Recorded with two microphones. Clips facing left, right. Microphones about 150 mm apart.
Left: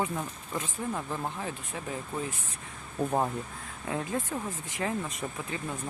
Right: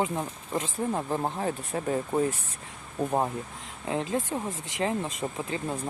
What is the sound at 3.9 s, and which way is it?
Speech, 25° right (ahead or behind).